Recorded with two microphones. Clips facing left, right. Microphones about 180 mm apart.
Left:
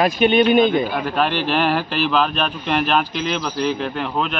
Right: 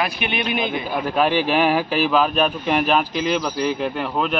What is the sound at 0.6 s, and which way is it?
Speech, 10° right (ahead or behind).